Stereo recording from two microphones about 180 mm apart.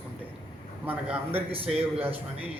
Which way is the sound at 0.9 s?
10° right (ahead or behind).